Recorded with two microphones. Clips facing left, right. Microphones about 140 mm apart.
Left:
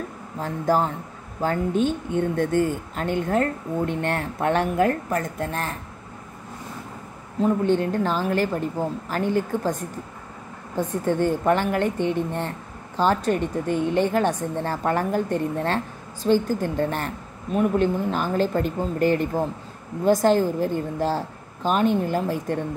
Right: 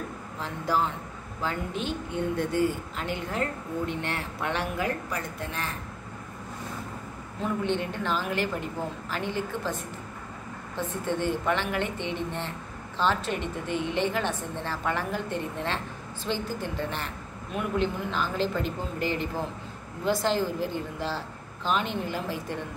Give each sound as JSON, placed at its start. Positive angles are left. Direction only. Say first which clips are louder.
{"t": 0.4, "sound": "a woman's voice", "louder": "left 6 dB", "side_deg": 45}
{"t": 7.4, "sound": "a woman's voice", "louder": "left 8 dB", "side_deg": 40}